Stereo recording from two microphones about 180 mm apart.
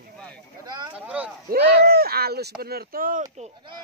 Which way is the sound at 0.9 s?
5° right (ahead or behind).